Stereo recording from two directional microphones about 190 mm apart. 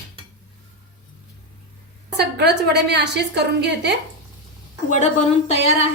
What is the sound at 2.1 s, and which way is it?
A woman's voice, 60° right (ahead or behind).